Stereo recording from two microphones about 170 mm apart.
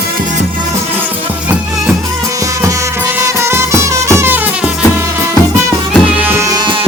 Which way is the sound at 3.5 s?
15° right (ahead or behind).